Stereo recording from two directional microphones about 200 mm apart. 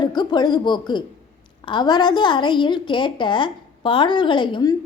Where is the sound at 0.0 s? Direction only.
20° left (ahead or behind).